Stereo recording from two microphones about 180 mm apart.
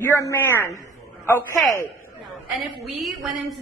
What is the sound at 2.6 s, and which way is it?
Speech, centre (ahead or behind).